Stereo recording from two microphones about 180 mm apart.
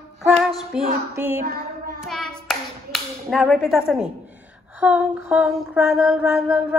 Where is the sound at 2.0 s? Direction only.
Centre (ahead or behind).